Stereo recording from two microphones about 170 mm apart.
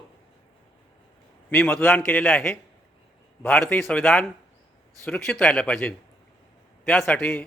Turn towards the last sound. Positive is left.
turn(degrees=5)  # may be behind; listen again after turning